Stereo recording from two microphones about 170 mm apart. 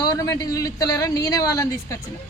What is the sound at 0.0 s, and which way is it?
A woman's voice, 20° left (ahead or behind).